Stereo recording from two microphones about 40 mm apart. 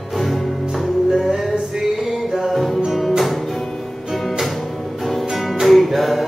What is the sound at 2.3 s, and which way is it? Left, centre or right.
Music, centre.